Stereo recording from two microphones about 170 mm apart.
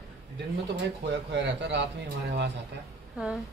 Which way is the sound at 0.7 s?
90° right.